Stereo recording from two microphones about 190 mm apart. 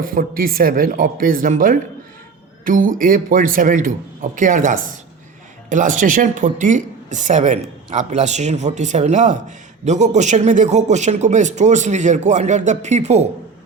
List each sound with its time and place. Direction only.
0.0 s speech: 50° right (ahead or behind)